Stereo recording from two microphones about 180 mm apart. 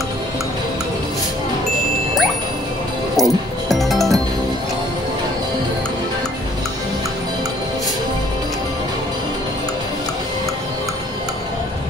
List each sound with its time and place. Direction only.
3.2 s music: centre (ahead or behind)